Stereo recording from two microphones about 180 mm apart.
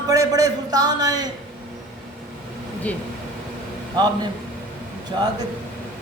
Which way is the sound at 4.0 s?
20° right (ahead or behind).